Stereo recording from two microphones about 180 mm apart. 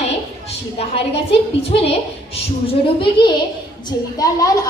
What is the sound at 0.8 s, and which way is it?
Speech, 35° left (ahead or behind).